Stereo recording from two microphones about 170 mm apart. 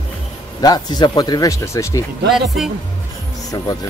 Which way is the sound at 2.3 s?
Centre (ahead or behind).